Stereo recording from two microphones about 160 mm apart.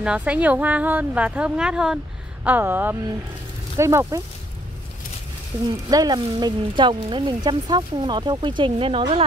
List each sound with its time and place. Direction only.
0.0 s speech: 5° right (ahead or behind)
5.7 s speech: 25° right (ahead or behind)